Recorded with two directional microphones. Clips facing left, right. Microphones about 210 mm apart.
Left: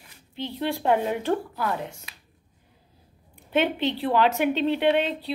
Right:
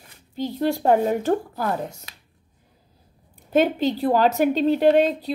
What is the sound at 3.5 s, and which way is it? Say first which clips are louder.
A woman's voice: right 4 dB; 40° right (ahead or behind).